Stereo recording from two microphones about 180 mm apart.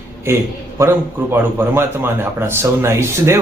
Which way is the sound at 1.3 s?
10° right (ahead or behind).